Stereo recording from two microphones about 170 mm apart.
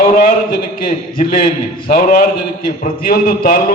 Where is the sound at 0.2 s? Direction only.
55° left (ahead or behind).